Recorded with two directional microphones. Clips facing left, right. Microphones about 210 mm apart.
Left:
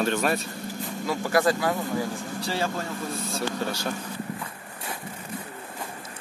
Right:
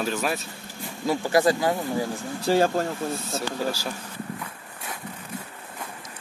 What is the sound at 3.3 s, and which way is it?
Speech, 5° right (ahead or behind).